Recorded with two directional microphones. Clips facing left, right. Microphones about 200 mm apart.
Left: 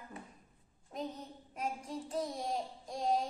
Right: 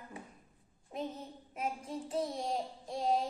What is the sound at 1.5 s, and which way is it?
A woman's voice, 5° right (ahead or behind).